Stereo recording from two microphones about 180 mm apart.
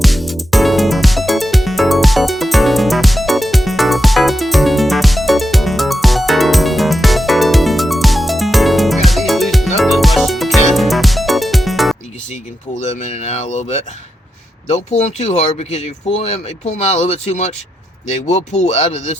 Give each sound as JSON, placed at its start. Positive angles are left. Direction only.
{"t": 0.0, "sound": "music", "side_deg": 0}
{"t": 12.8, "sound": "a sound", "side_deg": 40}
{"t": 14.7, "sound": "speech", "side_deg": 40}